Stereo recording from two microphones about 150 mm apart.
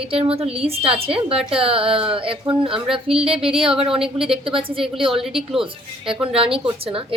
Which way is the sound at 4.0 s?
5° right (ahead or behind).